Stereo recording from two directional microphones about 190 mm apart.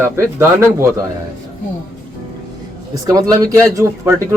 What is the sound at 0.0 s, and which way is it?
Speech, 15° right (ahead or behind).